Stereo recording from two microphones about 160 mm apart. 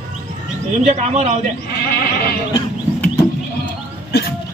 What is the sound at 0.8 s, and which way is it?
Speech, 45° right (ahead or behind).